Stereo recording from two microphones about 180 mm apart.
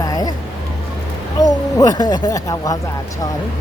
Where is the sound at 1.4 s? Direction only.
20° left (ahead or behind).